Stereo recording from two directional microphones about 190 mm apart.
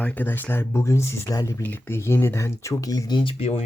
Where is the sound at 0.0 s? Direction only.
10° left (ahead or behind).